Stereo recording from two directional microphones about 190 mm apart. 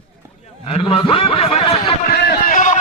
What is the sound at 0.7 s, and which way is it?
Snicker, 30° left (ahead or behind).